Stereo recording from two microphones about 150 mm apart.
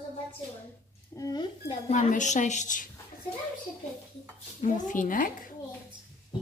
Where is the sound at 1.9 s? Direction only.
50° left (ahead or behind).